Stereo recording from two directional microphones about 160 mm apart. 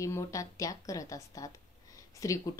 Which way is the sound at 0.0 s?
20° left (ahead or behind).